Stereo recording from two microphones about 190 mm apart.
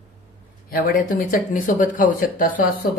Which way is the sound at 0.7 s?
45° left (ahead or behind).